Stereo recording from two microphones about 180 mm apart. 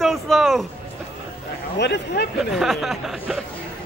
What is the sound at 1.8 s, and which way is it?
Speech, 70° left (ahead or behind).